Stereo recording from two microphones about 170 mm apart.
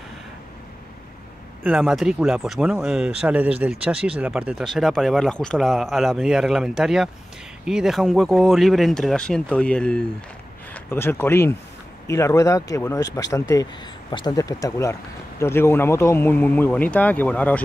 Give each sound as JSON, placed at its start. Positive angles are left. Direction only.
{"t": 1.6, "sound": "speech", "side_deg": -5}